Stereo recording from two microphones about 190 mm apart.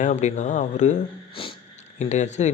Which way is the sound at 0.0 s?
40° left (ahead or behind).